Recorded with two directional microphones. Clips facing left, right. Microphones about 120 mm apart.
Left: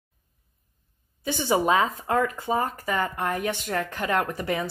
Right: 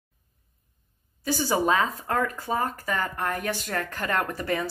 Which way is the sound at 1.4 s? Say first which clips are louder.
Left 2 dB; 20° left (ahead or behind).